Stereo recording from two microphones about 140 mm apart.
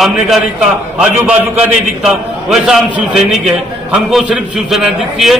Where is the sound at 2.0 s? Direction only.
Centre (ahead or behind).